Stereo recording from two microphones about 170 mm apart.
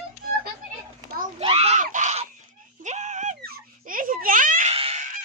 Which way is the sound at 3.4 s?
60° right (ahead or behind).